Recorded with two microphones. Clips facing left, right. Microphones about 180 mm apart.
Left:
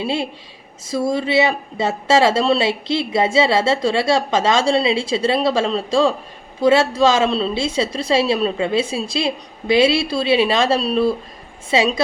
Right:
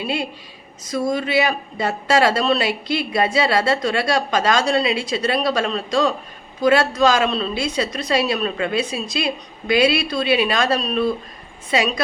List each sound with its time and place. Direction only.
0.0 s speech: 25° left (ahead or behind)